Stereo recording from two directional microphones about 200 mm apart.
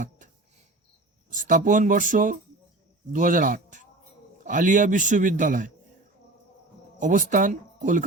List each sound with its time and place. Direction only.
1.3 s a man's voice: 40° right (ahead or behind)
7.0 s a man's voice: 40° right (ahead or behind)